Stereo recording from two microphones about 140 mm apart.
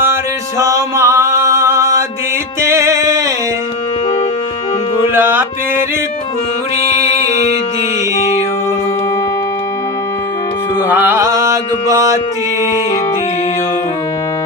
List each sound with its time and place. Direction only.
0.6 s music: 20° right (ahead or behind)
5.1 s music: 15° right (ahead or behind)
10.8 s mantra: 15° right (ahead or behind)